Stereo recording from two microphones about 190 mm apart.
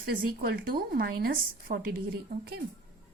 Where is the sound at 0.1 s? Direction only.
50° right (ahead or behind).